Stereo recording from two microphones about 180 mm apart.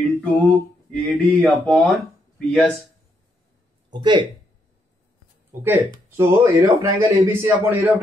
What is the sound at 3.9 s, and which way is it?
Speech, 25° right (ahead or behind).